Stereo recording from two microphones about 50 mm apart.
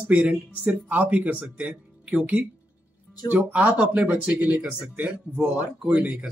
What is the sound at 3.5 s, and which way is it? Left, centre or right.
Speech, right.